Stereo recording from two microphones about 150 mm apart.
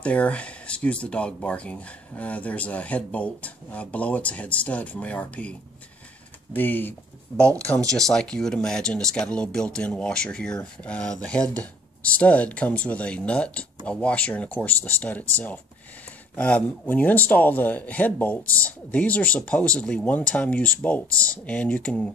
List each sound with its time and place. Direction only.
0.0 s speech: 10° left (ahead or behind)
8.0 s speech: 5° left (ahead or behind)